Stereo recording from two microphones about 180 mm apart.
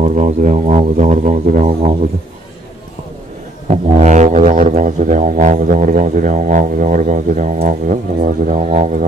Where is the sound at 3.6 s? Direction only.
40° right (ahead or behind).